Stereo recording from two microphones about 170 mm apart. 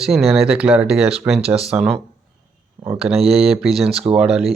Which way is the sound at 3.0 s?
5° right (ahead or behind).